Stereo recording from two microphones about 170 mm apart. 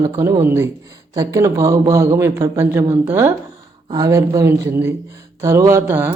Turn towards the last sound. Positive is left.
turn(degrees=-15)  # may be behind; listen again after turning